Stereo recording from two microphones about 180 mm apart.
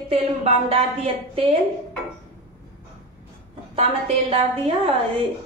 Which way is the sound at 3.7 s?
35° right (ahead or behind).